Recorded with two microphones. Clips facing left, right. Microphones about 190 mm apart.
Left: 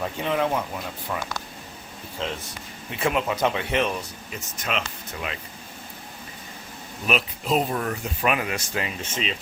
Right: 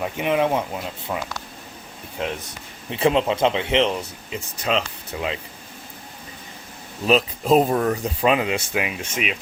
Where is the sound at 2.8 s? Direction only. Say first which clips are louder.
Right 5 dB; 30° right (ahead or behind).